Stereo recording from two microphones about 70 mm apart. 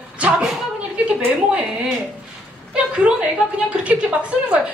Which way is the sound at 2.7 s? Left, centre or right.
Centre.